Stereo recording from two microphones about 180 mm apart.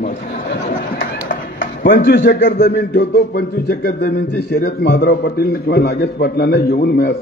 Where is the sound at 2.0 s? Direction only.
75° left (ahead or behind).